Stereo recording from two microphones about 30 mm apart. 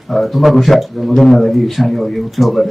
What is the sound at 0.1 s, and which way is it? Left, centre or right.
A man's voice, centre.